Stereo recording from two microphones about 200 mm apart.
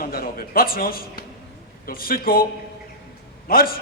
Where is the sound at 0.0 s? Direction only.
50° left (ahead or behind).